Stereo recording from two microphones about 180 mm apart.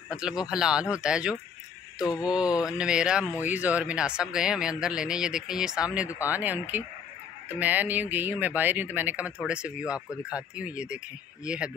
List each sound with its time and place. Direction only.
0.1 s speech: 5° right (ahead or behind)
2.0 s mantra: 20° left (ahead or behind)
2.2 s speech: 5° right (ahead or behind)